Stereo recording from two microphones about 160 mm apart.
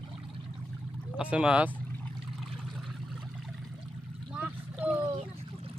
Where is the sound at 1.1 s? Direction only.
5° right (ahead or behind).